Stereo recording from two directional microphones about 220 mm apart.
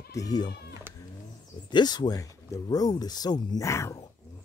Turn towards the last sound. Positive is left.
turn(degrees=15)  # may be behind; listen again after turning